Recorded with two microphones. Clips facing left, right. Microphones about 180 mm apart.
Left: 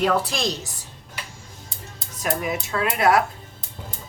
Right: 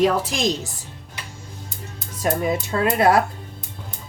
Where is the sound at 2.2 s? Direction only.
30° right (ahead or behind).